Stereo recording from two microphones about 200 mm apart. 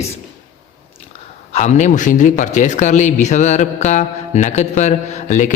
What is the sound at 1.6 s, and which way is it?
Speech, 35° left (ahead or behind).